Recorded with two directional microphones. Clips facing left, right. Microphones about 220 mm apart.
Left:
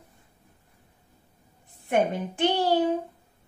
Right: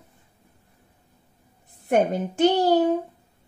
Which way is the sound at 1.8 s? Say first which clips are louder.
Right 3 dB; 40° right (ahead or behind).